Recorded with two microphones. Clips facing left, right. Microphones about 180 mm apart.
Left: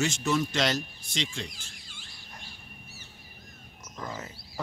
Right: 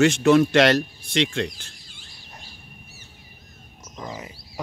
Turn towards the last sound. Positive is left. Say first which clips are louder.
# right 3 dB
turn(degrees=-15)  # may be behind; listen again after turning